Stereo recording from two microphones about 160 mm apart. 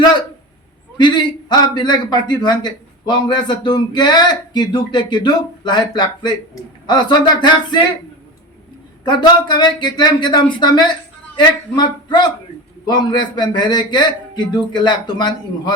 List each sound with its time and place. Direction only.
0.9 s a man's voice: 30° left (ahead or behind)
9.0 s a man's voice: 30° left (ahead or behind)